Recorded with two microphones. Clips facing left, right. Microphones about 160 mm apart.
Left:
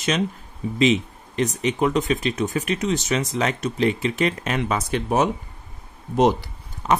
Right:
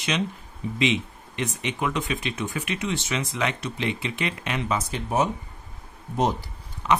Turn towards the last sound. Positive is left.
turn(degrees=40)  # may be behind; listen again after turning